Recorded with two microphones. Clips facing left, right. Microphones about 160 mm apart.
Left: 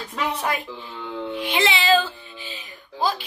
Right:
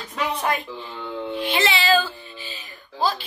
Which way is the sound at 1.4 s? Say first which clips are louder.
Even; 15° left (ahead or behind).